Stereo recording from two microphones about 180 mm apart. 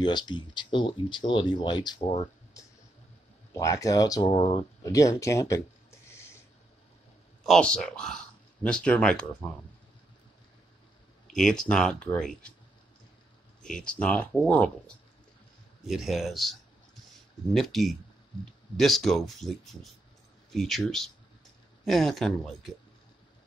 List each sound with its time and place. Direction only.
0.0 s speech: 25° left (ahead or behind)
2.6 s a sound: 20° left (ahead or behind)
3.5 s speech: 15° left (ahead or behind)
4.3 s speech: 30° left (ahead or behind)
4.8 s speech: 15° left (ahead or behind)
7.4 s speech: 5° left (ahead or behind)
11.3 s speech: 5° left (ahead or behind)
13.6 s speech: 5° left (ahead or behind)
15.8 s speech: centre (ahead or behind)
17.6 s speech: centre (ahead or behind)